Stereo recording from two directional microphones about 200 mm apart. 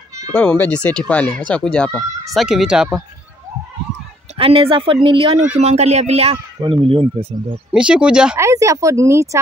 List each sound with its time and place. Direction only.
0.3 s speech: 5° left (ahead or behind)
4.4 s speech: 25° right (ahead or behind)
7.7 s speech: 5° right (ahead or behind)
8.5 s speech: 15° right (ahead or behind)